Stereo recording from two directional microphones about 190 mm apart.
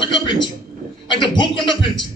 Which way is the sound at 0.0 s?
25° left (ahead or behind).